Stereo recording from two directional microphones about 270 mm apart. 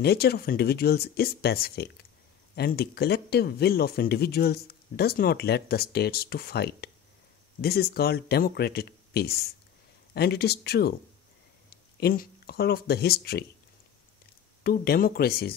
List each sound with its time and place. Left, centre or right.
0.0 s speech: left
14.6 s speech: left